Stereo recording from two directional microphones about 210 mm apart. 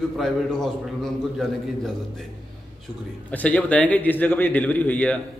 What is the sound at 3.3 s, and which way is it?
A man's voice, 5° left (ahead or behind).